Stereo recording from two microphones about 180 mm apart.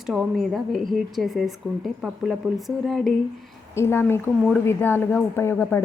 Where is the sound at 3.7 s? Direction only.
15° left (ahead or behind).